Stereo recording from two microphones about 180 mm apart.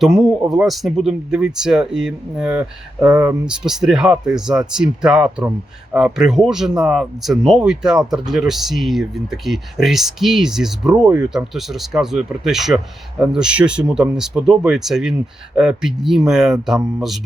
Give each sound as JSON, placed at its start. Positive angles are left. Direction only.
{"t": 0.0, "sound": "speech", "side_deg": 0}